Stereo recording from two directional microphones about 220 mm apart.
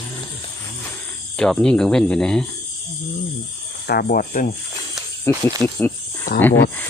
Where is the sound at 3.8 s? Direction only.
45° left (ahead or behind).